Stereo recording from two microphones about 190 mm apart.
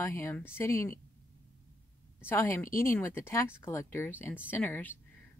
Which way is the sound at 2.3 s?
10° left (ahead or behind).